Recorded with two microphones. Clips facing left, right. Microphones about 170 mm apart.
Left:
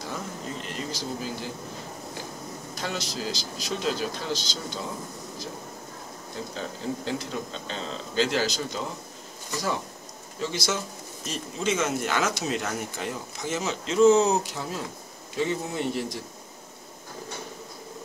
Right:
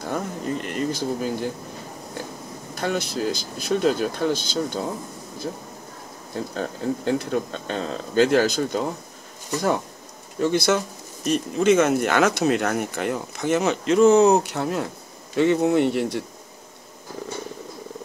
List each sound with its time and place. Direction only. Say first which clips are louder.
0.0 s a sound: right 7 dB; 55° right (ahead or behind)
2.7 s speech: right 8 dB; 55° right (ahead or behind)
6.5 s speech: right 6 dB; 55° right (ahead or behind)
10.4 s speech: right 9 dB; 55° right (ahead or behind)